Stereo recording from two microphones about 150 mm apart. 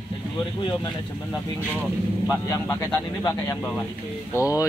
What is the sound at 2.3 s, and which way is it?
Speech, 20° left (ahead or behind).